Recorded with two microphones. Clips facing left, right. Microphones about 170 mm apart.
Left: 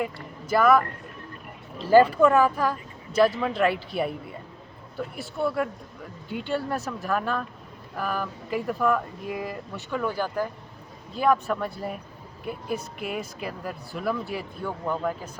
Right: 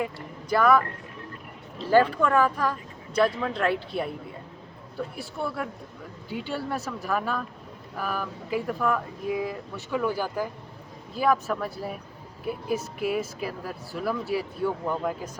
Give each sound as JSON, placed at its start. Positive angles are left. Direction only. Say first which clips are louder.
{"t": 0.0, "sound": "speech", "louder": "left 1 dB", "side_deg": 5}
{"t": 1.9, "sound": "speech", "louder": "left 4 dB", "side_deg": 5}